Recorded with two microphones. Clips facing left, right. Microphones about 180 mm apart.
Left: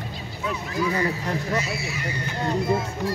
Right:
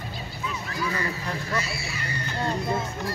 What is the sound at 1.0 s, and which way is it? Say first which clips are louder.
Speech: left 5 dB; 20° left (ahead or behind).